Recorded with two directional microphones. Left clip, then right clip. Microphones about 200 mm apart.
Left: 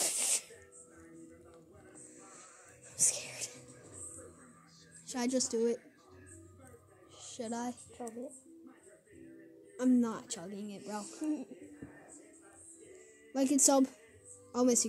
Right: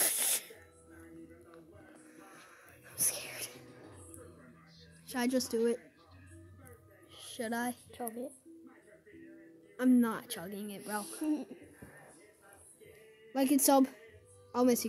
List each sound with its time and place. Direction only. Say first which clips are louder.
0.0 s music: even; 5° right (ahead or behind)
3.0 s whispering: left 4 dB; centre (ahead or behind)
5.0 s a woman's voice: right 1 dB; centre (ahead or behind)
7.2 s speech: right 3 dB; 10° right (ahead or behind)
9.8 s speech: right 2 dB; 10° right (ahead or behind)
11.1 s speech: right 1 dB; 40° right (ahead or behind)
13.3 s speech: right 1 dB; 5° right (ahead or behind)